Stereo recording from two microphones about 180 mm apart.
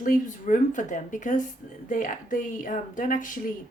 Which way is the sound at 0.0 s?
45° left (ahead or behind).